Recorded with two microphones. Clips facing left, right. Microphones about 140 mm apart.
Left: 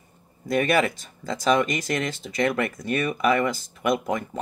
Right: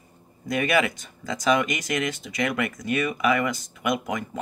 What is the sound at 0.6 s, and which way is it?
Speech, 45° left (ahead or behind).